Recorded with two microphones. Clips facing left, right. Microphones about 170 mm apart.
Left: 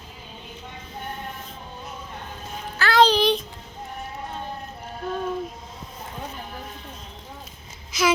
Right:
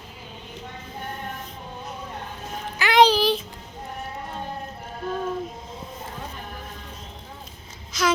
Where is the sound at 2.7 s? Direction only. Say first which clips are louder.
Right 1 dB; 15° right (ahead or behind).